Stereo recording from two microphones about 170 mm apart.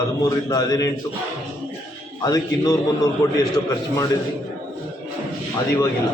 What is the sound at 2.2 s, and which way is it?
A man's voice, 20° left (ahead or behind).